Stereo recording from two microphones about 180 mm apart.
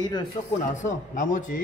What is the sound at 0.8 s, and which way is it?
Speech, 45° left (ahead or behind).